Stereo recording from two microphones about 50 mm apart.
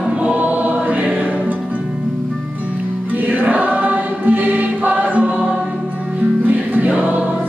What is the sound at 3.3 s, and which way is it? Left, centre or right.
Choir, right.